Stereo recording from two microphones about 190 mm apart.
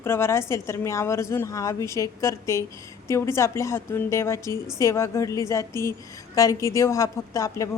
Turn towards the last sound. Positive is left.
turn(degrees=15)  # may be behind; listen again after turning